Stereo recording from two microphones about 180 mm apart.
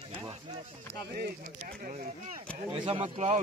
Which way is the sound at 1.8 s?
45° right (ahead or behind).